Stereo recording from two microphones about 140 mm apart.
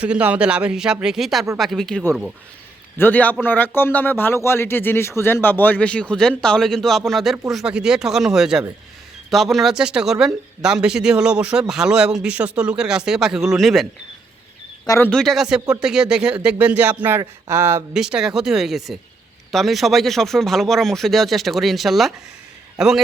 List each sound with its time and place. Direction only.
0.0 s speech: 10° right (ahead or behind)
14.8 s speech: 15° left (ahead or behind)
15.1 s speech: centre (ahead or behind); by 17.8 s 20° right (ahead or behind)
17.9 s speech: 5° right (ahead or behind)